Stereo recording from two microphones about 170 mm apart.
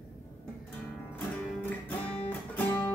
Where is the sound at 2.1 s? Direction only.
10° left (ahead or behind).